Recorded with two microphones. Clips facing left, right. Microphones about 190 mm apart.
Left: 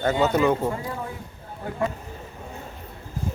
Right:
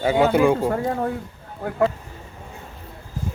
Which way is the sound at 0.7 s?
60° right (ahead or behind).